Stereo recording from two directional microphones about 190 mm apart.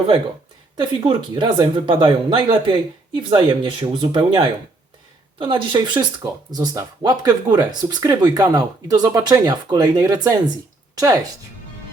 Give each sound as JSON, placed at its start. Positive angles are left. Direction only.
{"t": 0.8, "sound": "speech", "side_deg": -25}